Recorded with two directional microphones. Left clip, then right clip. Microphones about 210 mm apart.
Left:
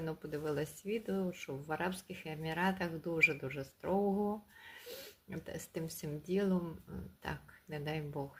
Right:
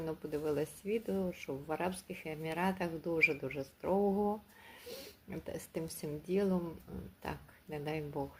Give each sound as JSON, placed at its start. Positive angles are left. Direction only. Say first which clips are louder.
{"t": 0.0, "sound": "speech", "louder": "right 2 dB", "side_deg": 15}